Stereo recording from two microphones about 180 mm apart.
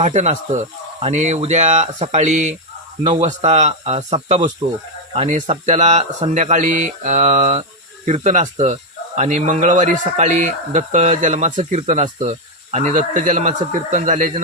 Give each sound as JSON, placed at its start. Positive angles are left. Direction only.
{"t": 0.0, "sound": "speech", "side_deg": -40}